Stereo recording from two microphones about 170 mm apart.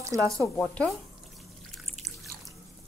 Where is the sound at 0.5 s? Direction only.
5° left (ahead or behind).